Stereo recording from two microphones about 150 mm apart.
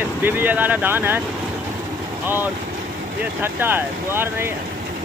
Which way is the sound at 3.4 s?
15° right (ahead or behind).